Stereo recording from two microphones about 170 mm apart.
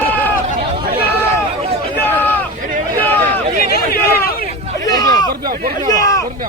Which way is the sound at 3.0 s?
10° left (ahead or behind).